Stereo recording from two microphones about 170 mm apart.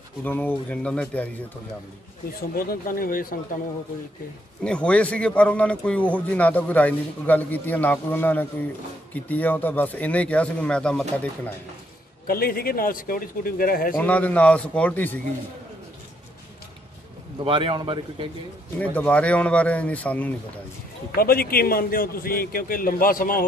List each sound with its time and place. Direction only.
0.2 s a man's voice: 10° left (ahead or behind)
2.5 s a man's voice: 60° left (ahead or behind)
4.6 s a man's voice: 5° left (ahead or behind)
12.3 s a man's voice: 60° left (ahead or behind)
13.9 s a man's voice: 10° left (ahead or behind)
17.4 s a man's voice: 30° right (ahead or behind)
18.8 s a man's voice: 10° left (ahead or behind)
21.2 s a man's voice: 60° left (ahead or behind)